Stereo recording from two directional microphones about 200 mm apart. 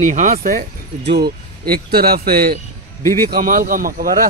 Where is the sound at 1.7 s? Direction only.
50° right (ahead or behind).